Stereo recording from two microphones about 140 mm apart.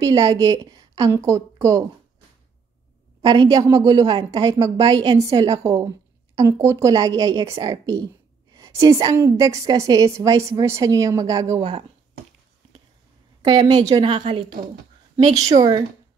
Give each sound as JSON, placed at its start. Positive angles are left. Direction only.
{"t": 0.0, "sound": "a woman's voice", "side_deg": -25}
{"t": 3.2, "sound": "a woman's voice", "side_deg": -25}
{"t": 13.7, "sound": "a woman's voice", "side_deg": -25}